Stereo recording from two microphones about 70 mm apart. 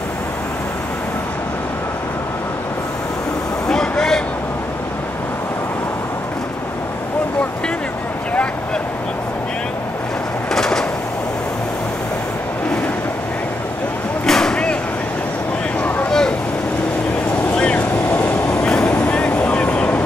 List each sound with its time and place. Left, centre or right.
3.6 s vehicle: centre
10.5 s bird: centre
14.2 s a sound: centre
16.1 s vehicle: centre
17.6 s vehicle: centre
18.3 s vehicle: left
18.6 s vehicle: centre